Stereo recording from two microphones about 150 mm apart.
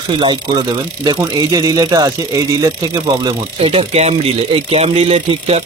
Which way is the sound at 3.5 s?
40° right (ahead or behind).